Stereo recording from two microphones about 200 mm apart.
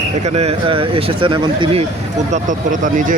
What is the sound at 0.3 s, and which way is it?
Speech, 30° right (ahead or behind).